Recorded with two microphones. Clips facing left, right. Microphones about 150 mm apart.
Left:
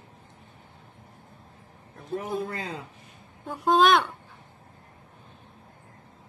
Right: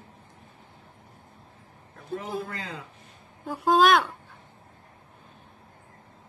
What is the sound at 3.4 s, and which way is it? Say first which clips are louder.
Speech: even; centre (ahead or behind).